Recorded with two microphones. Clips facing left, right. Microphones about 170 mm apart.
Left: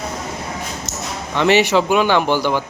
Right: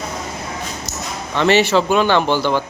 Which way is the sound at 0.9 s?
25° left (ahead or behind).